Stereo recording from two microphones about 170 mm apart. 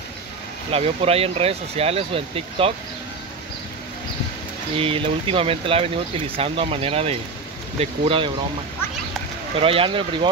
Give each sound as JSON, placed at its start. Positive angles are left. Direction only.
{"t": 0.7, "sound": "speech", "side_deg": -35}
{"t": 4.7, "sound": "speech", "side_deg": -35}
{"t": 9.6, "sound": "speech", "side_deg": -35}